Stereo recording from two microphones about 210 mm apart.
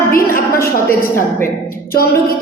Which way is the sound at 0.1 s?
40° left (ahead or behind).